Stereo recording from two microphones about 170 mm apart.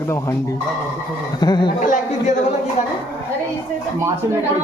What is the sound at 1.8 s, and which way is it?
Speech, 50° left (ahead or behind).